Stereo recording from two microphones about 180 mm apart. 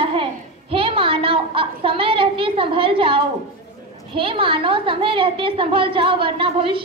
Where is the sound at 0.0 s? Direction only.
30° right (ahead or behind).